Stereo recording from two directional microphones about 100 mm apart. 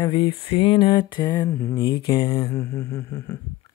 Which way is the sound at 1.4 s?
25° left (ahead or behind).